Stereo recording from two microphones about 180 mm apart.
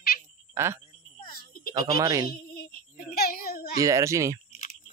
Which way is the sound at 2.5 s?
55° left (ahead or behind).